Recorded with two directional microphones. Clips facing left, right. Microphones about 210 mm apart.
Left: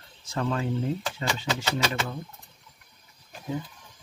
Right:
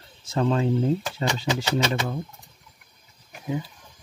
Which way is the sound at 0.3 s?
25° right (ahead or behind).